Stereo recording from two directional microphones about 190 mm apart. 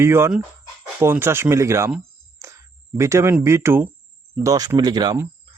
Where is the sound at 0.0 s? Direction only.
15° right (ahead or behind).